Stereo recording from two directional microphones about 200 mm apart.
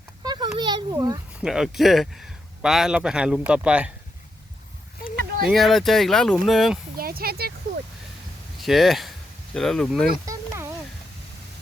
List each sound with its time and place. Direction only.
0.2 s a sound: 20° right (ahead or behind)
1.4 s a man's voice: 5° right (ahead or behind)
5.5 s a man's voice: centre (ahead or behind)
6.9 s speech: 50° right (ahead or behind)
8.5 s a man's voice: centre (ahead or behind)
10.2 s a sound: 15° right (ahead or behind)